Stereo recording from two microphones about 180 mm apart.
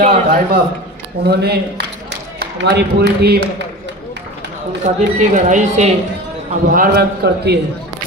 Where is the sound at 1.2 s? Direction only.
65° right (ahead or behind).